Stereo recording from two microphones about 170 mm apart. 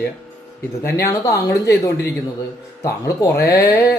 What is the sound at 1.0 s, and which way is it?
Speech, 20° left (ahead or behind).